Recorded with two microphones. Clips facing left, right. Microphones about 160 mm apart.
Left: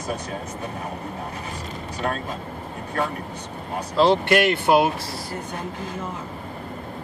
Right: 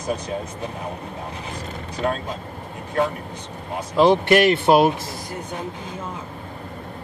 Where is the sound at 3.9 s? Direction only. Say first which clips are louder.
Right 3 dB; 15° right (ahead or behind).